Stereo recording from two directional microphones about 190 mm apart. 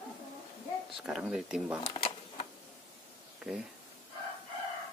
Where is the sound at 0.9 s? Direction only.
Centre (ahead or behind).